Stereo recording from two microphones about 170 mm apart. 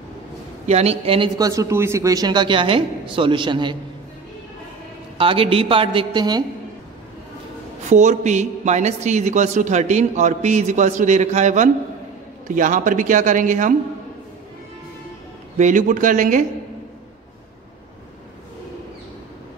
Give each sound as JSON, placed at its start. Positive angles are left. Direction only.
{"t": 0.7, "sound": "a woman's voice", "side_deg": -40}
{"t": 1.4, "sound": "a man's voice", "side_deg": -20}
{"t": 5.1, "sound": "a woman's voice", "side_deg": -30}
{"t": 7.9, "sound": "a man's voice", "side_deg": -45}
{"t": 15.5, "sound": "a man's voice", "side_deg": -45}